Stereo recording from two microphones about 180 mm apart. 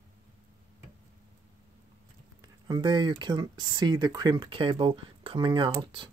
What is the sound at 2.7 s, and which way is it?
Speech, 25° right (ahead or behind).